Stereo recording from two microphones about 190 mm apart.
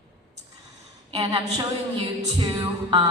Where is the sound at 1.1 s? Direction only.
20° right (ahead or behind).